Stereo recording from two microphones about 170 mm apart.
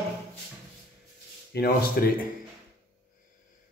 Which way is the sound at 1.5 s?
65° left (ahead or behind).